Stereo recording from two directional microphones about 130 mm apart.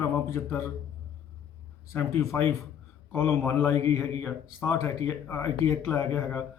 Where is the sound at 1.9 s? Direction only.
20° left (ahead or behind).